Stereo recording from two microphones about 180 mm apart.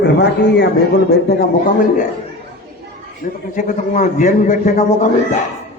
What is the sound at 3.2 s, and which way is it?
A man's voice, 50° left (ahead or behind).